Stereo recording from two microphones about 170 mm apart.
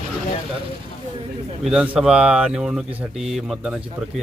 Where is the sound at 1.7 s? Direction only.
5° right (ahead or behind).